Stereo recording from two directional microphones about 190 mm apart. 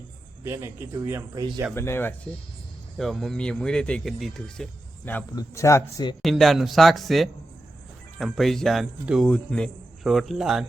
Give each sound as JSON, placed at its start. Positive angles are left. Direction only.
{"t": 0.4, "sound": "speech", "side_deg": -15}
{"t": 1.7, "sound": "speech", "side_deg": 15}
{"t": 3.0, "sound": "a man's voice", "side_deg": 0}
{"t": 5.3, "sound": "speech", "side_deg": 20}
{"t": 6.2, "sound": "a man's voice", "side_deg": 0}